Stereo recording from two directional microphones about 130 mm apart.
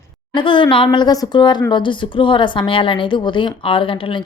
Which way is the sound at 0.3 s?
40° left (ahead or behind).